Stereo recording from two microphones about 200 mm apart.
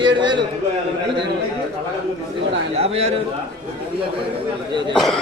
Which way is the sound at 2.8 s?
30° right (ahead or behind).